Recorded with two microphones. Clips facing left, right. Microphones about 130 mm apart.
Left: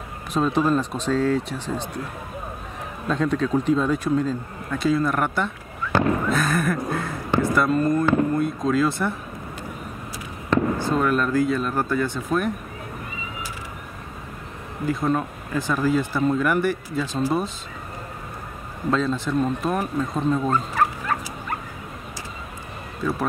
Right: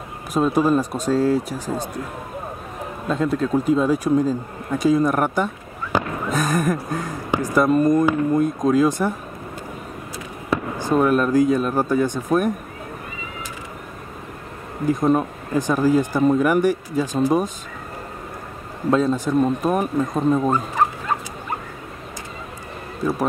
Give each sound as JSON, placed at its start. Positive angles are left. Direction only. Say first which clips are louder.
{"t": 0.3, "sound": "speech", "louder": "right 3 dB", "side_deg": -10}
{"t": 3.1, "sound": "speech", "louder": "right 1 dB", "side_deg": -5}
{"t": 10.5, "sound": "speech", "louder": "even", "side_deg": -15}
{"t": 14.9, "sound": "speech", "louder": "right 5 dB", "side_deg": -15}
{"t": 18.9, "sound": "speech", "louder": "right 4 dB", "side_deg": -15}